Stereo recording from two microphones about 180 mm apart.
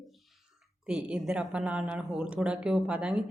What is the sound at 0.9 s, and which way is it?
Speech, 5° right (ahead or behind).